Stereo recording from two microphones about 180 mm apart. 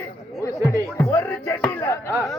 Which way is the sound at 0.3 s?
15° left (ahead or behind).